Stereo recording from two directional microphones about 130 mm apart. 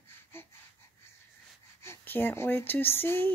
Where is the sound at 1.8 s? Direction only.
15° left (ahead or behind).